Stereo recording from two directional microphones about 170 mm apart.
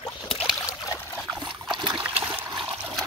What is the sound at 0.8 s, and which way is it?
Trickle, 20° left (ahead or behind).